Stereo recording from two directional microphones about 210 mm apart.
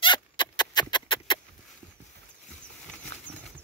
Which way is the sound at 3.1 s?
55° right (ahead or behind).